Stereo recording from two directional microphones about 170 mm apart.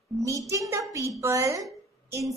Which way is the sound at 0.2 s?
20° right (ahead or behind).